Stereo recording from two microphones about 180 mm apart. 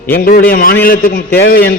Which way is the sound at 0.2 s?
55° left (ahead or behind).